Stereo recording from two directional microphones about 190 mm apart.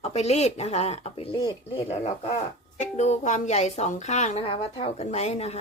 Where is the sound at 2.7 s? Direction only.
35° left (ahead or behind).